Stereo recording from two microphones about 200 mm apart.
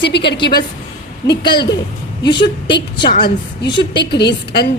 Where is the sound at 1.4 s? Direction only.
20° left (ahead or behind).